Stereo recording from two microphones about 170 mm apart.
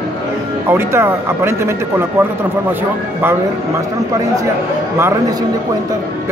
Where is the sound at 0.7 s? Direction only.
15° right (ahead or behind).